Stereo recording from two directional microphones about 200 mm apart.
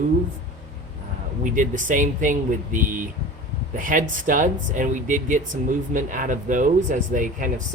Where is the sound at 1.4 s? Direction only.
40° right (ahead or behind).